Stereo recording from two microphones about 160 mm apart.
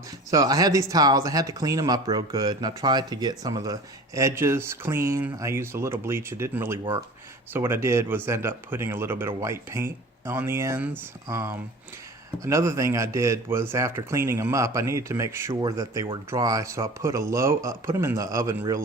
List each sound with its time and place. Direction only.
0.3 s speech: 20° right (ahead or behind)